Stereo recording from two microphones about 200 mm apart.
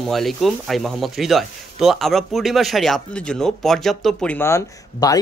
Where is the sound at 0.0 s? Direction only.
Centre (ahead or behind).